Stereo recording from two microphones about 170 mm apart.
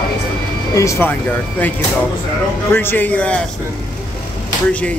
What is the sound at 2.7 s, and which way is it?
Speech, 15° left (ahead or behind).